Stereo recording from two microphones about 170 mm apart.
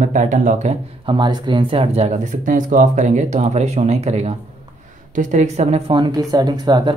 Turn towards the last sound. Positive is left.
turn(degrees=-25)  # may be behind; listen again after turning